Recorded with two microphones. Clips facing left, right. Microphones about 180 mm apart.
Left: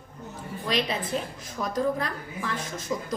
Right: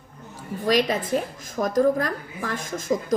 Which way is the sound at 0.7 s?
45° right (ahead or behind).